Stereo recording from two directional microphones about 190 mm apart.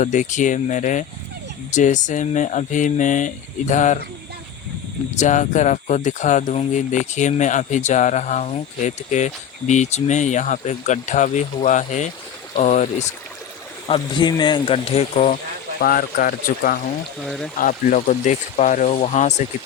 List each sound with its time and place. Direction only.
0.0 s speech: 40° left (ahead or behind)
5.1 s speech: 40° left (ahead or behind)
13.8 s speech: 25° left (ahead or behind)
15.8 s speech: 50° left (ahead or behind)
17.2 s speech: centre (ahead or behind)
17.6 s speech: 45° left (ahead or behind)